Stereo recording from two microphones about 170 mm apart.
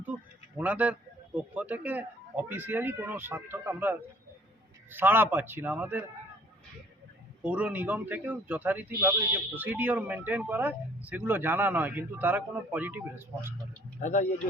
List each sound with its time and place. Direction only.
0.0 s a sound: 10° right (ahead or behind)
1.4 s speech: 10° right (ahead or behind)
7.4 s speech: 10° right (ahead or behind)
14.0 s speech: 50° left (ahead or behind)